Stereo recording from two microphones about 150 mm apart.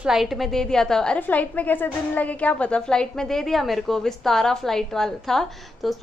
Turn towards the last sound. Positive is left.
turn(degrees=0)  # may be behind; listen again after turning